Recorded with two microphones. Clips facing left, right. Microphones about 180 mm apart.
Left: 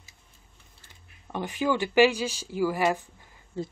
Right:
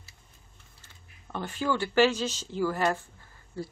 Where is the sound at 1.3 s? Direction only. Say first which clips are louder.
Left 3 dB; 15° left (ahead or behind).